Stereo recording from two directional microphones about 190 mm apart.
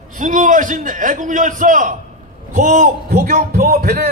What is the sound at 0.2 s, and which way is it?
A man's voice, 45° right (ahead or behind).